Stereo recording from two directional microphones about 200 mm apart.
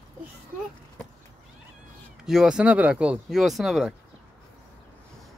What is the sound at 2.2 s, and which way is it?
Speech, 5° right (ahead or behind).